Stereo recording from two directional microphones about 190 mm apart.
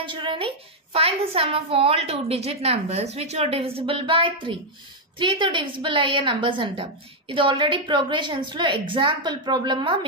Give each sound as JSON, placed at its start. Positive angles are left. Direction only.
{"t": 0.0, "sound": "a woman's voice", "side_deg": -25}